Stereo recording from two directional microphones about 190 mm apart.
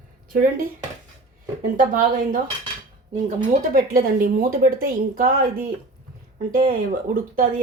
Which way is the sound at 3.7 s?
50° right (ahead or behind).